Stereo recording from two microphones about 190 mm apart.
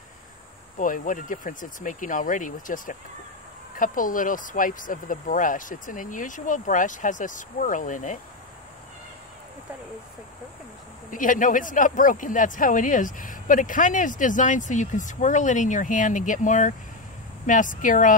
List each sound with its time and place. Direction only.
0.7 s speech: 45° left (ahead or behind)
11.1 s speech: 45° left (ahead or behind)